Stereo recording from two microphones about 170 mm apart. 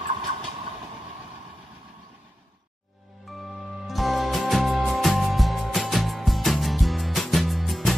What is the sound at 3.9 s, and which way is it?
Music, centre (ahead or behind).